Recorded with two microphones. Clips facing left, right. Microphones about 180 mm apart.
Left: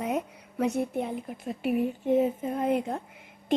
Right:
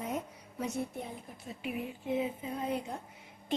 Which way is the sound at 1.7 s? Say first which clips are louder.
Left 10 dB; 45° left (ahead or behind).